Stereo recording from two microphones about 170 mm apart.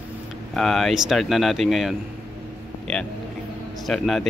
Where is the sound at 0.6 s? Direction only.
5° left (ahead or behind).